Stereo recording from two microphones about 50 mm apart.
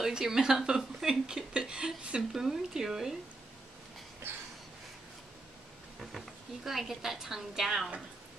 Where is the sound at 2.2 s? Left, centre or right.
Centre.